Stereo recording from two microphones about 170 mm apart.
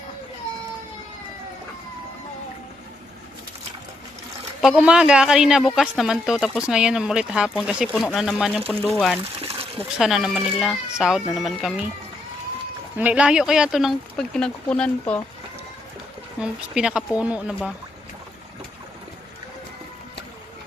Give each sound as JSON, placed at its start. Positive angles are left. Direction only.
{"t": 4.6, "sound": "speech", "side_deg": -5}
{"t": 9.4, "sound": "a sound", "side_deg": -35}
{"t": 10.0, "sound": "speech", "side_deg": -5}
{"t": 13.0, "sound": "speech", "side_deg": -10}
{"t": 16.4, "sound": "speech", "side_deg": -5}